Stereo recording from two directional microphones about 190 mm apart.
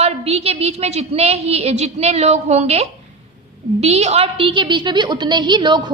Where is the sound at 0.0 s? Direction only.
30° right (ahead or behind).